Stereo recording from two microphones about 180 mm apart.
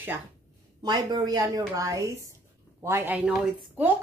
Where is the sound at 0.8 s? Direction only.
25° right (ahead or behind).